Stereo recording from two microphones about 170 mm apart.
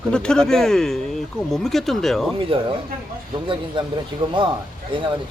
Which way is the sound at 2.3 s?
30° right (ahead or behind).